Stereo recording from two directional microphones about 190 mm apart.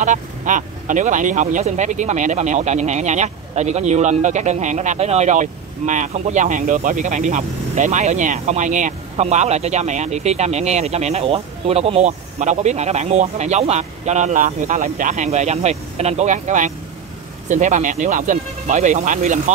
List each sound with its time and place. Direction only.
0.0 s speech: 40° right (ahead or behind)